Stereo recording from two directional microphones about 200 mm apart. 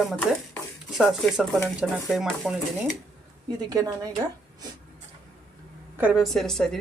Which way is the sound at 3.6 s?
20° right (ahead or behind).